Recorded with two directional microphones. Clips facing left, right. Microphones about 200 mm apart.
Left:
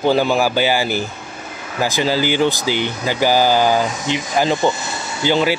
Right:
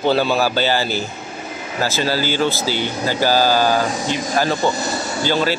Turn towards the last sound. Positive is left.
turn(degrees=15)  # may be behind; listen again after turning